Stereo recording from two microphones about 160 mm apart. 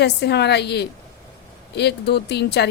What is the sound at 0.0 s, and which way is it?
A woman's voice, 90° left.